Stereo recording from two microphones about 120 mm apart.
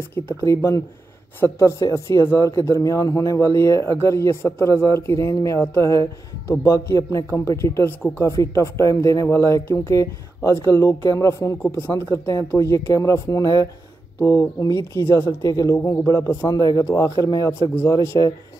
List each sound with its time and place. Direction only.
0.1 s speech: 25° left (ahead or behind)